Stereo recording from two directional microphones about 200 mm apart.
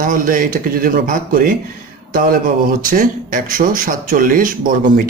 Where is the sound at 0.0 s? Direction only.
40° right (ahead or behind).